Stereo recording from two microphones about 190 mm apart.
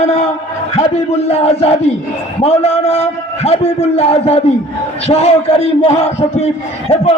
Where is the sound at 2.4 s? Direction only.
35° left (ahead or behind).